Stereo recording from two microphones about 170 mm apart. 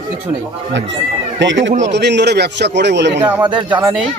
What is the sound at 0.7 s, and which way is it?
Speech, 90° right.